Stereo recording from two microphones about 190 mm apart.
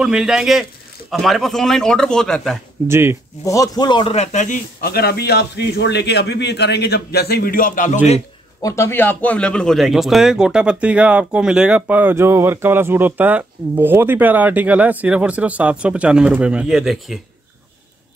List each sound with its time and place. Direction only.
0.0 s speech: 5° right (ahead or behind)
2.9 s speech: 15° right (ahead or behind)
3.4 s a man's voice: 15° left (ahead or behind); by 8.2 s 40° left (ahead or behind)
8.6 s speech: 15° left (ahead or behind)